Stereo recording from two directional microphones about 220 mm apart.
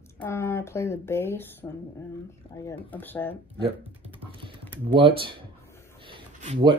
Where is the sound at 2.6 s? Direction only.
10° left (ahead or behind).